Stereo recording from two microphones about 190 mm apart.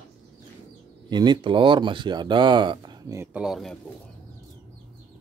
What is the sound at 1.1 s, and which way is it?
Speech, 25° right (ahead or behind).